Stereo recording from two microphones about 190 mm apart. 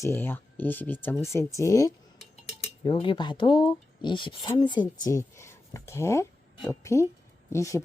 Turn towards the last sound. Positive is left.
turn(degrees=15)  # may be behind; listen again after turning